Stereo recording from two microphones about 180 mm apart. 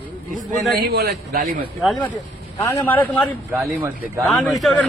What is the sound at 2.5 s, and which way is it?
Speech, 15° left (ahead or behind).